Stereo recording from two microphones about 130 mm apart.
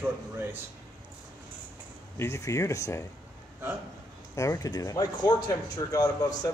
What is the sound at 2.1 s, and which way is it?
Speech, 20° left (ahead or behind).